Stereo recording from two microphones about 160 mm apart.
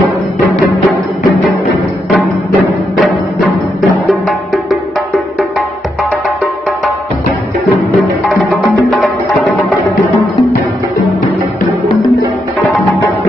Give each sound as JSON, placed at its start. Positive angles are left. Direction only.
{"t": 3.0, "sound": "music", "side_deg": 0}
{"t": 8.9, "sound": "music", "side_deg": 0}